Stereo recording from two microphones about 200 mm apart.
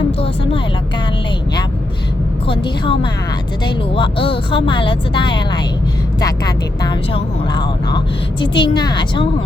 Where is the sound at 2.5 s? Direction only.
25° left (ahead or behind).